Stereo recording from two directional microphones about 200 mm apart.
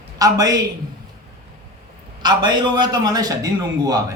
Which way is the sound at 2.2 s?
20° right (ahead or behind).